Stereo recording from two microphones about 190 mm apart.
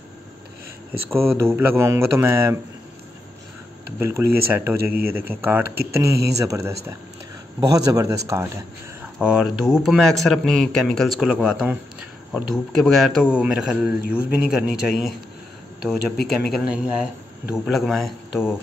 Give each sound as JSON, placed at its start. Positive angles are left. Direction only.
{"t": 1.1, "sound": "speech", "side_deg": -15}
{"t": 4.0, "sound": "speech", "side_deg": -15}
{"t": 9.0, "sound": "a man's voice", "side_deg": -5}
{"t": 16.3, "sound": "a man's voice", "side_deg": 0}